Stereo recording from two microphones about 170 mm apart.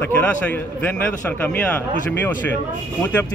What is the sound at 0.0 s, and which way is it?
Speech, 10° left (ahead or behind).